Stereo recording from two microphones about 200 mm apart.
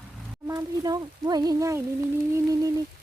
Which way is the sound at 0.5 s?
20° right (ahead or behind).